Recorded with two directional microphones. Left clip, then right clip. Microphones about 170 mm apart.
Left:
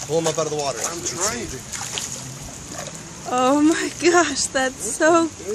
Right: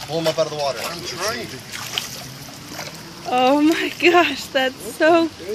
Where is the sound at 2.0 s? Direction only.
Centre (ahead or behind).